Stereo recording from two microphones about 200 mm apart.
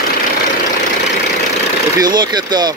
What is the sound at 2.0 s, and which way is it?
Speech, 20° right (ahead or behind).